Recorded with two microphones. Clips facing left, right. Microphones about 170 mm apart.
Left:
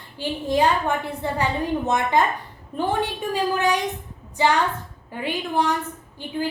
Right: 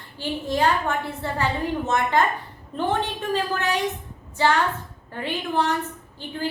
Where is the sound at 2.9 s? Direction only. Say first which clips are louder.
Even; 15° left (ahead or behind).